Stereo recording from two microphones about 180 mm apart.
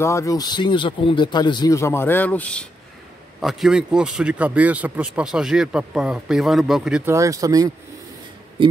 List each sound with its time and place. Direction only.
0.0 s a man's voice: 15° left (ahead or behind); by 7.0 s centre (ahead or behind)
7.1 s speech: 15° right (ahead or behind)
8.6 s speech: 30° right (ahead or behind)